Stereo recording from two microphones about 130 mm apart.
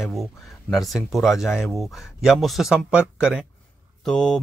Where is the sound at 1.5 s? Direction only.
15° left (ahead or behind).